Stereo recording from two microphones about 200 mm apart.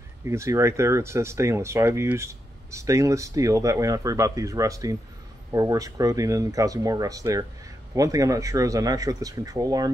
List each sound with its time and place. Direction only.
0.2 s speech: 15° right (ahead or behind)